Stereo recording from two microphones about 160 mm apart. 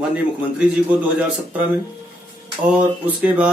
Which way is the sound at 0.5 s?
5° right (ahead or behind).